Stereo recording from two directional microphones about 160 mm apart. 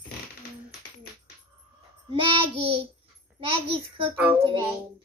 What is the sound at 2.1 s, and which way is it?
Child singing, 30° right (ahead or behind).